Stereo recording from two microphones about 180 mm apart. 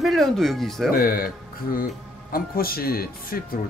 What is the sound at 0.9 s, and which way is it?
Speech, 55° left (ahead or behind).